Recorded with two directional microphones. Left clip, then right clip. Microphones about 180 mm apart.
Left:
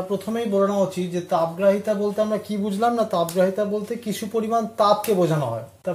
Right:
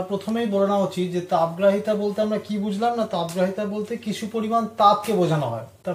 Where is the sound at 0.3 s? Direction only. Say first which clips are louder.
Even; 50° left (ahead or behind).